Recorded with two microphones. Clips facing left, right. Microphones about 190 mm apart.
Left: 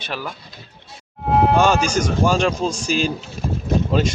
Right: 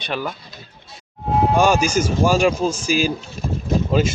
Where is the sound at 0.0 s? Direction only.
5° left (ahead or behind).